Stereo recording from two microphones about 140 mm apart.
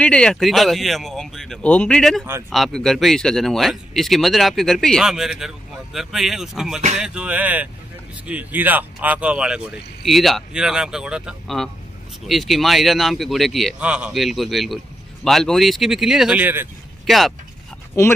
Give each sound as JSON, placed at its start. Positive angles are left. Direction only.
{"t": 0.0, "sound": "speech", "side_deg": 5}
{"t": 17.0, "sound": "speech", "side_deg": 0}
{"t": 17.9, "sound": "speech", "side_deg": 20}